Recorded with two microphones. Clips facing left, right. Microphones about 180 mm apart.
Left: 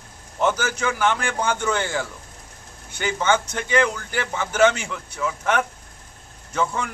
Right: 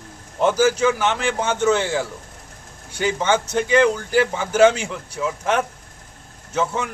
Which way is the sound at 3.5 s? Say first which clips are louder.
Right 5 dB; 30° right (ahead or behind).